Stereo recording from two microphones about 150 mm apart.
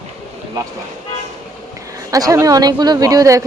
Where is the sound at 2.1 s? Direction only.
25° right (ahead or behind).